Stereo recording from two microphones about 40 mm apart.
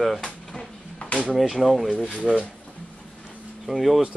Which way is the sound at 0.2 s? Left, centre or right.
Centre.